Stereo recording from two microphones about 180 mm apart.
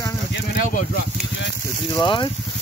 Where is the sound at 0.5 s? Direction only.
50° left (ahead or behind).